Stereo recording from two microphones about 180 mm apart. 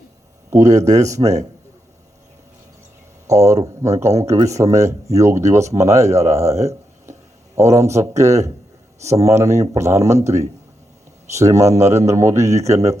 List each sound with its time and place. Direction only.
0.5 s speech: 20° right (ahead or behind)
3.2 s speech: 20° right (ahead or behind)